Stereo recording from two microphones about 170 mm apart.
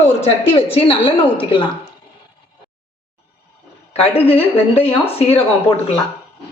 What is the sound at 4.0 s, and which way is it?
Speech, 35° left (ahead or behind).